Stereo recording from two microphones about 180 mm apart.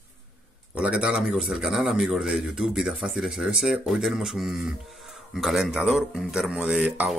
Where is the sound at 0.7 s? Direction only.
5° right (ahead or behind).